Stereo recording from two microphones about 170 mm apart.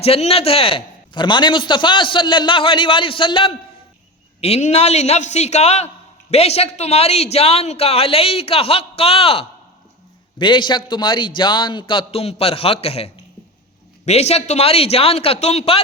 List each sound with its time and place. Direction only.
0.0 s a man's voice: 35° left (ahead or behind)